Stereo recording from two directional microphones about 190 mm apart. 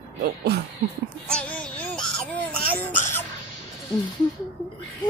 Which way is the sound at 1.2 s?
5° left (ahead or behind).